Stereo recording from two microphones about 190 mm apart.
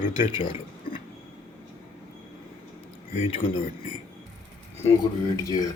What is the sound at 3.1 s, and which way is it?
Speech, 30° left (ahead or behind).